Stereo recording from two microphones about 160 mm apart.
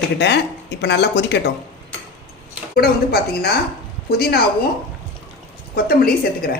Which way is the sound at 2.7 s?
75° left (ahead or behind).